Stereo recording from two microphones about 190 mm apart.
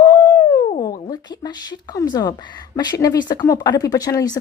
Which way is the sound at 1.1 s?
20° left (ahead or behind).